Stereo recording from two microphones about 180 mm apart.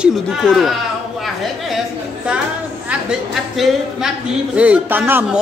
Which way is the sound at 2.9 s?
5° right (ahead or behind).